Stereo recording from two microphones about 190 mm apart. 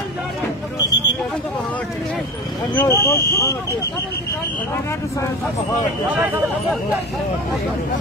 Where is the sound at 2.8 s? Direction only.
15° left (ahead or behind).